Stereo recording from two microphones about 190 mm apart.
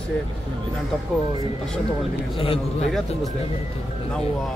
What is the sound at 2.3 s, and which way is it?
Speech, 30° left (ahead or behind).